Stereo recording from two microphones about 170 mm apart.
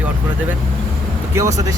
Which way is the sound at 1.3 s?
20° right (ahead or behind).